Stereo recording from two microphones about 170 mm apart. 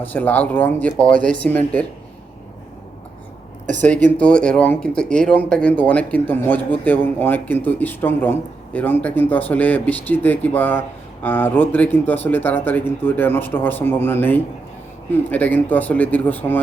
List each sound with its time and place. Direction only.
0.0 s speech: 10° left (ahead or behind)
3.8 s speech: 10° left (ahead or behind)